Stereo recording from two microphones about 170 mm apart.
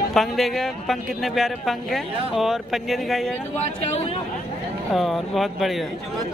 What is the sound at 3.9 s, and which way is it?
Speech, 40° left (ahead or behind).